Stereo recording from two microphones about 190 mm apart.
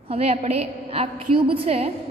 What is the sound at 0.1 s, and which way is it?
A woman's voice, 30° right (ahead or behind).